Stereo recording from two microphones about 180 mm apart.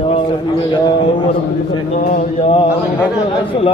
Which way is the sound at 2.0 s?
45° left (ahead or behind).